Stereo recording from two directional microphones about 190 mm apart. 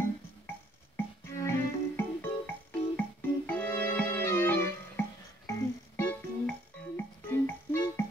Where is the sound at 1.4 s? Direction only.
15° left (ahead or behind).